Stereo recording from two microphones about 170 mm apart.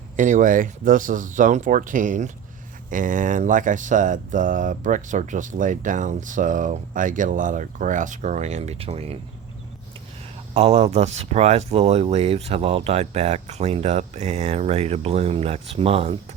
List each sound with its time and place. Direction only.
0.2 s speech: 50° right (ahead or behind)
10.5 s speech: 40° right (ahead or behind)